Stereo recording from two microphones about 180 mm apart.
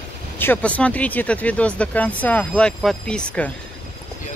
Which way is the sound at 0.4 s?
10° left (ahead or behind).